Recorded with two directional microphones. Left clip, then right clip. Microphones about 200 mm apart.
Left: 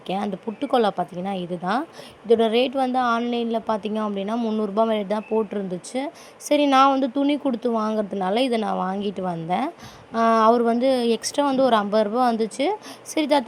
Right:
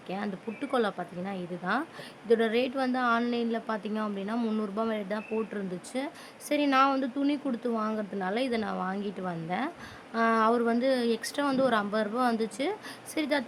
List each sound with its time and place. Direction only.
0.1 s speech: 25° left (ahead or behind)
4.4 s speech: 15° left (ahead or behind)